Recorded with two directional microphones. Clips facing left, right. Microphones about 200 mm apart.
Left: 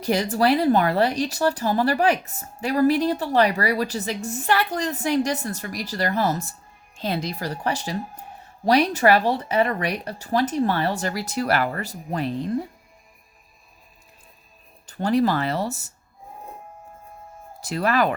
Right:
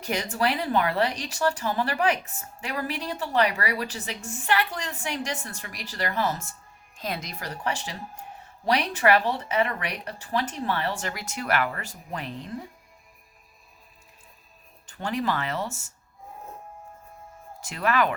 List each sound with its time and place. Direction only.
0.0 s speech: 35° left (ahead or behind)
14.8 s speech: 35° left (ahead or behind)
17.6 s speech: 35° left (ahead or behind)